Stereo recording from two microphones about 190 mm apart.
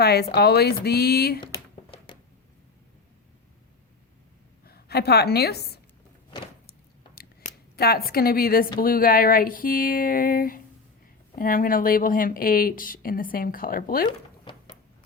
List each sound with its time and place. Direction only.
0.0 s speech: 55° left (ahead or behind)
1.4 s a sound: 25° left (ahead or behind)
4.6 s a woman's voice: 55° left (ahead or behind)
7.2 s scissors: 55° left (ahead or behind)
8.8 s speech: 50° left (ahead or behind)